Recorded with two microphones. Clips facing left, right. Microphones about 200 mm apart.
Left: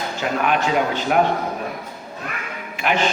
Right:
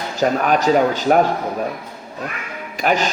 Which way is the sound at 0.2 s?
40° right (ahead or behind).